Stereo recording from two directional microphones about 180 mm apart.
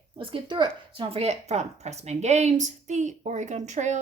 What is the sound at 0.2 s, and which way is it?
Speech, 30° right (ahead or behind).